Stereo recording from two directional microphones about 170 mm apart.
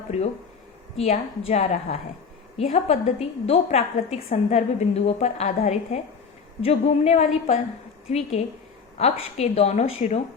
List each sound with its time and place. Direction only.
0.1 s a woman's voice: 40° left (ahead or behind)